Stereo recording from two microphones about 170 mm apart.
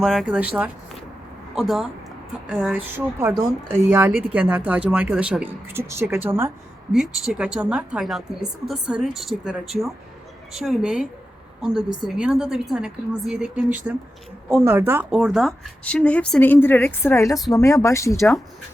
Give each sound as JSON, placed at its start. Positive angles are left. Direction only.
{"t": 0.0, "sound": "a woman's voice", "side_deg": 0}